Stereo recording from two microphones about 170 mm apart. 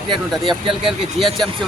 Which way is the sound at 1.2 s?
30° right (ahead or behind).